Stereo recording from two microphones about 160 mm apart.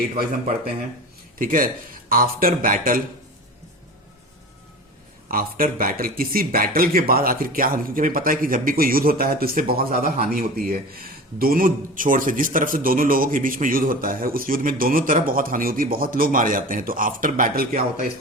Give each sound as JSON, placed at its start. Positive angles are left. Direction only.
{"t": 1.4, "sound": "speech", "side_deg": -60}
{"t": 5.3, "sound": "speech", "side_deg": -65}